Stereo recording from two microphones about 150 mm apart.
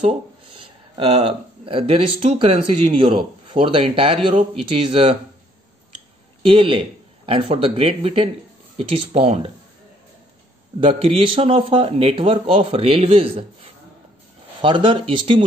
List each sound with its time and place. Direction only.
0.0 s speech: 35° right (ahead or behind)
6.4 s speech: 35° right (ahead or behind)
10.8 s speech: 40° right (ahead or behind)
14.6 s speech: 35° right (ahead or behind)